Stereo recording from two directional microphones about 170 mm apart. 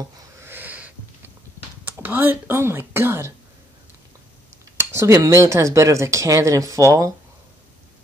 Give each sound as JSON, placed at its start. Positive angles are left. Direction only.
{"t": 0.4, "sound": "a sound", "side_deg": -10}
{"t": 1.9, "sound": "speech", "side_deg": -10}
{"t": 4.7, "sound": "speech", "side_deg": -15}